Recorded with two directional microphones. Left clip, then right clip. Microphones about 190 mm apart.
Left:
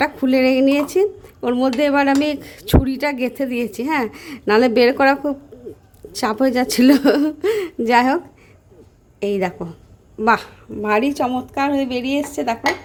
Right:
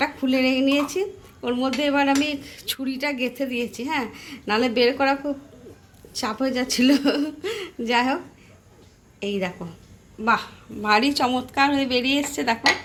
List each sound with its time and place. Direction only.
0.0 s a woman's voice: 60° left (ahead or behind)
9.2 s a woman's voice: 60° left (ahead or behind)
10.8 s a woman's voice: 50° left (ahead or behind)